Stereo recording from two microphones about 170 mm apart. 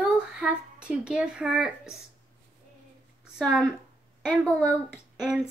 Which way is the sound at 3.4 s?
Centre (ahead or behind).